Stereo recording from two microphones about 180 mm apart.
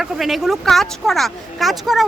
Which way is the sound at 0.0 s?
Centre (ahead or behind).